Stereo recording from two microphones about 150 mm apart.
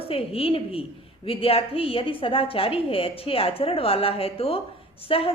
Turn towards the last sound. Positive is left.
turn(degrees=40)  # may be behind; listen again after turning